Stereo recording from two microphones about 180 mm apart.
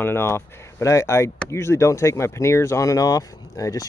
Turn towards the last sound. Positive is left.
turn(degrees=20)  # may be behind; listen again after turning